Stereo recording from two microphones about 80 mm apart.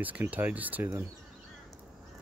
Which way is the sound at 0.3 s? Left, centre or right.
Centre.